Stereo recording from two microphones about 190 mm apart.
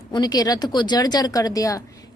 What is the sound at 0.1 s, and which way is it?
Speech, 20° left (ahead or behind).